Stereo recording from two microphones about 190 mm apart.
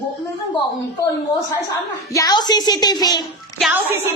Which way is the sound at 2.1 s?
20° left (ahead or behind).